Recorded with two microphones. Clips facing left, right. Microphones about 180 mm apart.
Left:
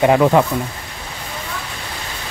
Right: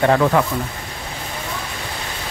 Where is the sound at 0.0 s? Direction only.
15° left (ahead or behind).